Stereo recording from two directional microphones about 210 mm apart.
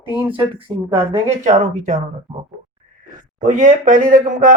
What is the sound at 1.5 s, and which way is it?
Speech, 35° right (ahead or behind).